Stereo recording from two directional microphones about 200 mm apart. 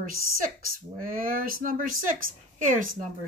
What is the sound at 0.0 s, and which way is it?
Speech, 45° right (ahead or behind).